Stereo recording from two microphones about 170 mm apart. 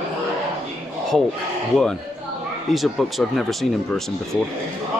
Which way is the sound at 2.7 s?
Centre (ahead or behind).